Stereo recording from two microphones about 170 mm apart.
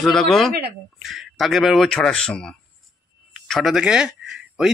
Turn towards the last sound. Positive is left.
turn(degrees=-5)  # may be behind; listen again after turning